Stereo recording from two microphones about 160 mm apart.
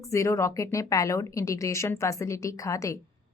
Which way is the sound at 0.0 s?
20° left (ahead or behind).